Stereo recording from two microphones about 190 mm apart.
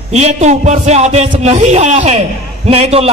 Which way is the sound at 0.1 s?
35° right (ahead or behind).